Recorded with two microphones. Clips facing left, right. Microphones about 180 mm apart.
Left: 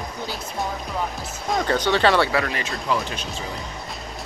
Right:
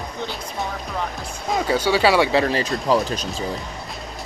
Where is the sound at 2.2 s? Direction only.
30° right (ahead or behind).